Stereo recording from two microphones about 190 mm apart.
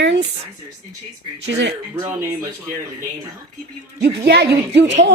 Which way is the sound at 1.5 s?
70° right (ahead or behind).